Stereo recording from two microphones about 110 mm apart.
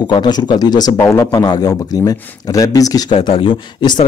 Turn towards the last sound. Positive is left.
turn(degrees=50)  # may be behind; listen again after turning